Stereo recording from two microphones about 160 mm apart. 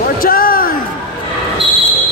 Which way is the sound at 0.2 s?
65° left (ahead or behind).